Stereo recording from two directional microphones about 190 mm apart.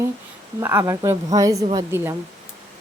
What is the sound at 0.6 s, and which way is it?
A woman's voice, 15° right (ahead or behind).